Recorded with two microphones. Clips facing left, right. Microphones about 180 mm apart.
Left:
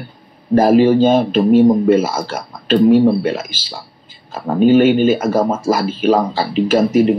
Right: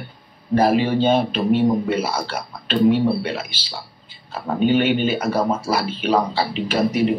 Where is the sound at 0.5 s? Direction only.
45° left (ahead or behind).